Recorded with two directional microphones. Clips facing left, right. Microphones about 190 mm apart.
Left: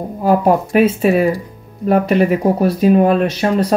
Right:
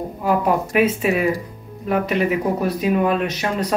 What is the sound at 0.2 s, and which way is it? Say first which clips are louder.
Speech: left 6 dB; 40° left (ahead or behind).